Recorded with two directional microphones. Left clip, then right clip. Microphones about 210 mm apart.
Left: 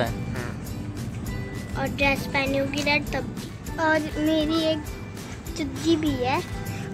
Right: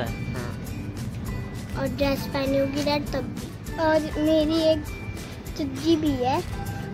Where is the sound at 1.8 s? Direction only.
15° right (ahead or behind).